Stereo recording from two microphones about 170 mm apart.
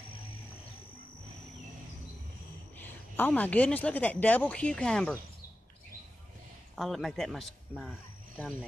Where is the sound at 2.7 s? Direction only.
10° left (ahead or behind).